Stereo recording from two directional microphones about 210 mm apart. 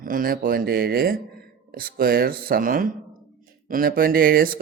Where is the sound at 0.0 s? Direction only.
40° right (ahead or behind).